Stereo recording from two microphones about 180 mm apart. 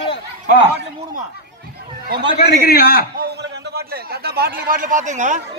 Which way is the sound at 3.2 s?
60° right (ahead or behind).